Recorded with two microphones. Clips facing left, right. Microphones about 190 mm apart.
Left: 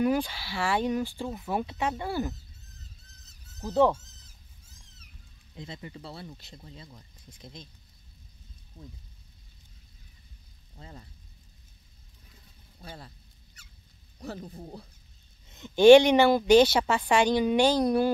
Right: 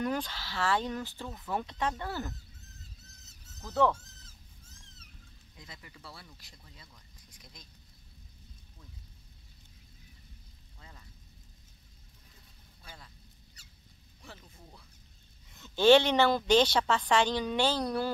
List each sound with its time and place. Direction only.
0.0 s speech: 10° left (ahead or behind)
3.7 s speech: 20° left (ahead or behind)
5.6 s speech: 30° left (ahead or behind)
8.8 s speech: 35° left (ahead or behind)
10.8 s speech: 35° left (ahead or behind)
12.8 s speech: 35° left (ahead or behind)
14.2 s speech: 40° left (ahead or behind)
15.5 s speech: 15° left (ahead or behind)